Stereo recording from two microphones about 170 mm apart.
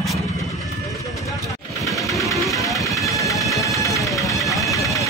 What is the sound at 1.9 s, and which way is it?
Sewing machine, centre (ahead or behind).